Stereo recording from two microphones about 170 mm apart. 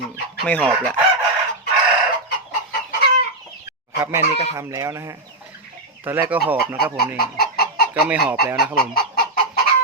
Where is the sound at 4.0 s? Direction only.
15° right (ahead or behind).